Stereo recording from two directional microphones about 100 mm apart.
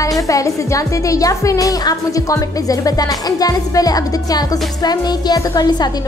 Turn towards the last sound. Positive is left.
turn(degrees=45)  # may be behind; listen again after turning